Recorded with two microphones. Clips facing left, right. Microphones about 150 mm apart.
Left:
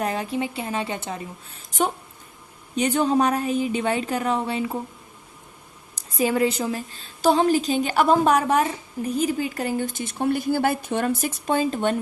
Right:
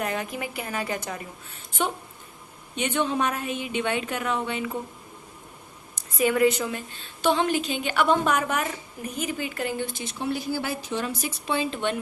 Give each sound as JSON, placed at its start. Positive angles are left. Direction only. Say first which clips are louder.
{"t": 0.0, "sound": "a woman's voice", "louder": "left 4 dB", "side_deg": 30}
{"t": 5.9, "sound": "a woman's voice", "louder": "left 1 dB", "side_deg": 30}